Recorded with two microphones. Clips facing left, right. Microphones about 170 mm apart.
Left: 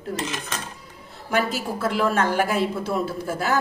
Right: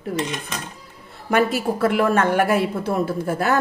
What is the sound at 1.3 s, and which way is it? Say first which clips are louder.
A woman's voice: right 5 dB; 60° right (ahead or behind).